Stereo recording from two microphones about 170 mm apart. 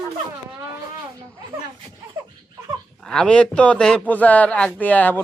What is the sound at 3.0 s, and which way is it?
A man's voice, 5° left (ahead or behind).